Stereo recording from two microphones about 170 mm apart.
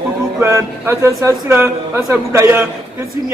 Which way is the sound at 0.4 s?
15° right (ahead or behind).